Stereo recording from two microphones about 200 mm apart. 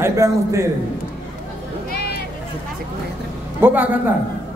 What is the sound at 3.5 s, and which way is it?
Speech, 10° right (ahead or behind).